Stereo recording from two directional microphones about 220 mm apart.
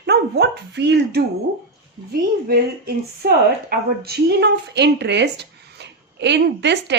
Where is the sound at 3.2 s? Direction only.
45° right (ahead or behind).